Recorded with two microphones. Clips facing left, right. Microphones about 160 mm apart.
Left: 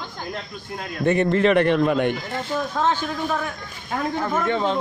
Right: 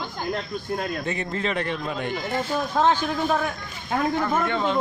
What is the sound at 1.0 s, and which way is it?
A man's voice, 60° left (ahead or behind).